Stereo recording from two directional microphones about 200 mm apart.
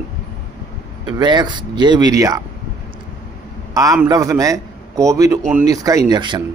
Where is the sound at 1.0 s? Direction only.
20° right (ahead or behind).